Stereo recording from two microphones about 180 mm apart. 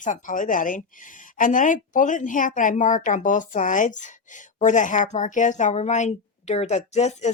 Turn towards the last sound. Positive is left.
turn(degrees=40)  # may be behind; listen again after turning